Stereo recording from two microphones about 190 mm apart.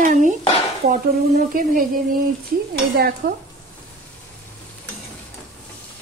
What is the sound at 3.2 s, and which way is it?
Speech, 55° right (ahead or behind).